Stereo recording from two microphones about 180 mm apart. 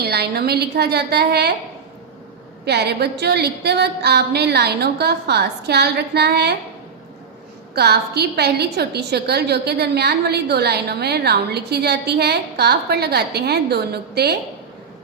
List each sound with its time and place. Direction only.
0.0 s a woman's voice: 65° right (ahead or behind)
2.6 s a woman's voice: 65° right (ahead or behind)
7.8 s a woman's voice: 65° right (ahead or behind)